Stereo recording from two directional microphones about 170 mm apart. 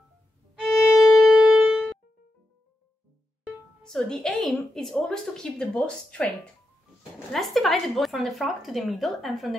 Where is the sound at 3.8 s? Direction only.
5° left (ahead or behind).